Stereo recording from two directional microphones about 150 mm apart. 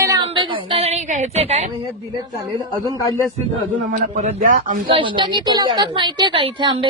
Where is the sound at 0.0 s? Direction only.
25° right (ahead or behind); by 1.7 s 45° right (ahead or behind).